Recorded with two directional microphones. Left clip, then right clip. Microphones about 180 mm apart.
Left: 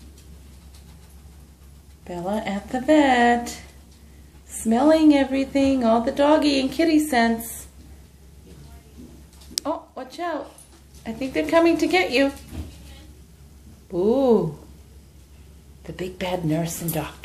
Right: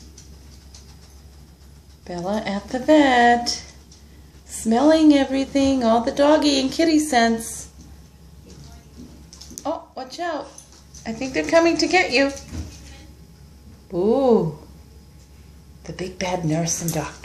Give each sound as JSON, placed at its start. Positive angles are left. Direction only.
{"t": 2.0, "sound": "speech", "side_deg": -5}
{"t": 10.1, "sound": "a woman's voice", "side_deg": -5}
{"t": 13.8, "sound": "speech", "side_deg": 0}
{"t": 15.8, "sound": "speech", "side_deg": 0}